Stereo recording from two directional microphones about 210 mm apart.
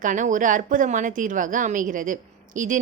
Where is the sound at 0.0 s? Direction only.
35° right (ahead or behind).